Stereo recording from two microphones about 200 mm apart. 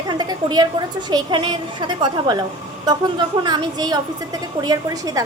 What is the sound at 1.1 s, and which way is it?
A woman's voice, 25° right (ahead or behind).